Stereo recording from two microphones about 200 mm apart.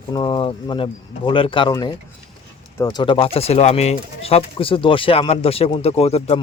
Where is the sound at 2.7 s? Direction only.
20° left (ahead or behind).